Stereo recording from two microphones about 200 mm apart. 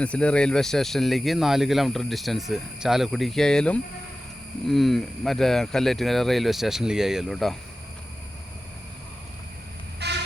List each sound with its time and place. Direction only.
0.0 s speech: 5° left (ahead or behind)
10.0 s vehicle: 55° right (ahead or behind)